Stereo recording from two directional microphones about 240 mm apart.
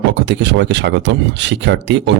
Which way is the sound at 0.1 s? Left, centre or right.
Right.